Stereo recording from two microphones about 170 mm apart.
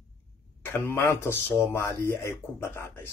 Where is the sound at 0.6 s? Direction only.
15° left (ahead or behind).